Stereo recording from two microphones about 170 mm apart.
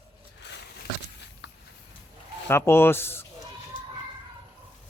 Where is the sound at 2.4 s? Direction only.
15° left (ahead or behind).